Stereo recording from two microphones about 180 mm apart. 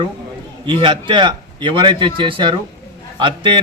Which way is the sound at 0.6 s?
25° right (ahead or behind).